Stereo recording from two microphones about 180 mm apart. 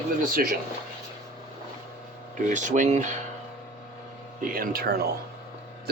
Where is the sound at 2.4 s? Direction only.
45° right (ahead or behind).